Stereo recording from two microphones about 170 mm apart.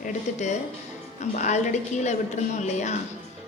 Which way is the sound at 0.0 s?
40° left (ahead or behind).